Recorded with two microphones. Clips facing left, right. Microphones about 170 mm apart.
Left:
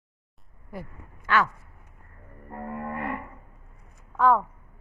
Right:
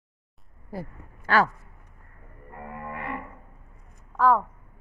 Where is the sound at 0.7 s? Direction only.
35° right (ahead or behind).